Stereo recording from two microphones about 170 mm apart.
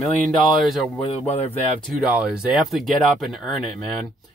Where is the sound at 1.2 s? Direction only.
35° left (ahead or behind).